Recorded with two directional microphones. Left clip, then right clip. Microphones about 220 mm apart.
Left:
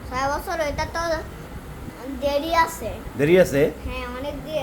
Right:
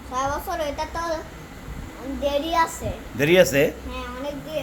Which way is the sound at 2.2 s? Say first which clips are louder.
Left 1 dB; 10° left (ahead or behind).